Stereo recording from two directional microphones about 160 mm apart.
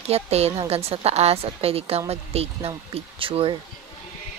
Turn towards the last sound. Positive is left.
turn(degrees=-35)  # may be behind; listen again after turning